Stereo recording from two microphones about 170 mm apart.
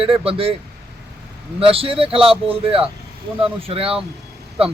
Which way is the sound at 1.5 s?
35° right (ahead or behind).